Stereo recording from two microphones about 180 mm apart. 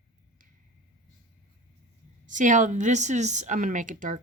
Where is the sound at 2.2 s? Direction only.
45° right (ahead or behind).